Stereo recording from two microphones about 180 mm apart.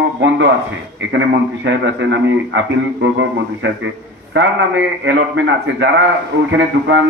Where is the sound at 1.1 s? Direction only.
80° right.